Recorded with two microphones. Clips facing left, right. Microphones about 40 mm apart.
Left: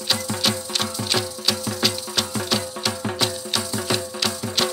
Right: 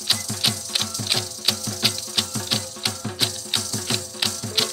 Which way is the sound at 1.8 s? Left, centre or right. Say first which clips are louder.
Left 2 dB; centre.